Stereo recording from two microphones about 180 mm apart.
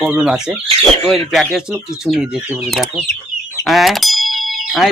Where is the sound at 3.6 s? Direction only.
Centre (ahead or behind).